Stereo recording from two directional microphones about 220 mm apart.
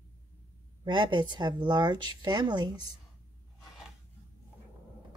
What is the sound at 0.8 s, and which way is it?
A woman's voice, 20° right (ahead or behind).